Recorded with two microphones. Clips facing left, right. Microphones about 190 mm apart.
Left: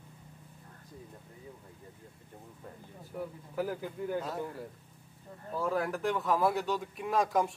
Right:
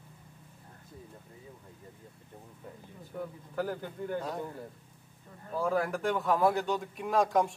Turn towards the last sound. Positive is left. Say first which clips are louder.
# right 2 dB
turn(degrees=0)  # may be behind; listen again after turning